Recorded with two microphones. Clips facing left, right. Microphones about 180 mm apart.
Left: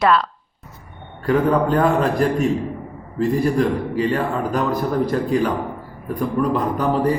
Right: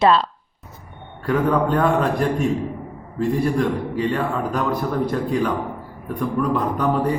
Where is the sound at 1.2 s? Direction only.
Centre (ahead or behind).